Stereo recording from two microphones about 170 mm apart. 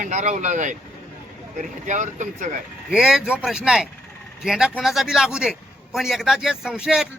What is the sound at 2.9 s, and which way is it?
A man's voice, 5° right (ahead or behind).